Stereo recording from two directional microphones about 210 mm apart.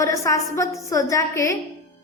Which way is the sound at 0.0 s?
15° left (ahead or behind).